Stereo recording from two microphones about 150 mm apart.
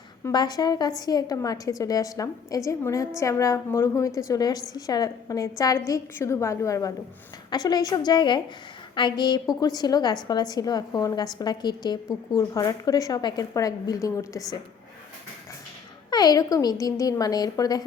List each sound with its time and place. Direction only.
0.3 s a woman's voice: 25° left (ahead or behind)
16.0 s a woman's voice: 25° left (ahead or behind)